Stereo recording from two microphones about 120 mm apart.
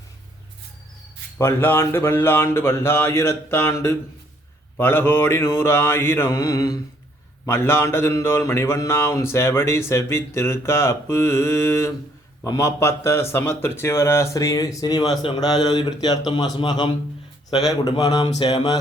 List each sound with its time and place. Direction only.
1.4 s a man's voice: 20° left (ahead or behind); by 18.8 s 35° left (ahead or behind)